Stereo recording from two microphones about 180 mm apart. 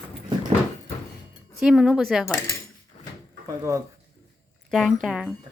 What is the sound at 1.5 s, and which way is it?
Speech, centre (ahead or behind).